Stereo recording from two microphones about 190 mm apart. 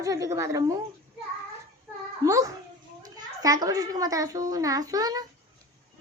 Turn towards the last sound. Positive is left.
turn(degrees=-20)  # may be behind; listen again after turning